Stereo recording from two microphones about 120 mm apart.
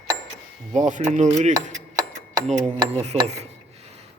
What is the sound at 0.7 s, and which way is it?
Speech, 90° right.